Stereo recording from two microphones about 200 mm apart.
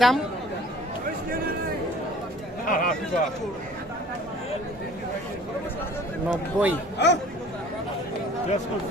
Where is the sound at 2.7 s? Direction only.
45° left (ahead or behind).